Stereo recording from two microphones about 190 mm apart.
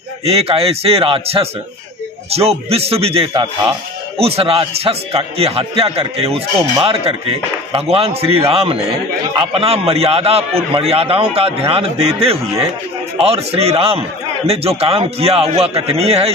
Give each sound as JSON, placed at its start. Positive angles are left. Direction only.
{"t": 0.2, "sound": "a man's voice", "side_deg": -30}